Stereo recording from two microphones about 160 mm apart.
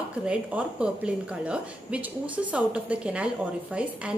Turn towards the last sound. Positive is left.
turn(degrees=-5)  # may be behind; listen again after turning